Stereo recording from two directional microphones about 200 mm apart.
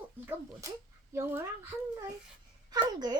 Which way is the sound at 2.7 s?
20° right (ahead or behind).